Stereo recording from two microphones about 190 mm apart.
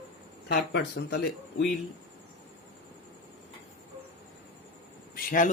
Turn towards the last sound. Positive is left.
turn(degrees=45)  # may be behind; listen again after turning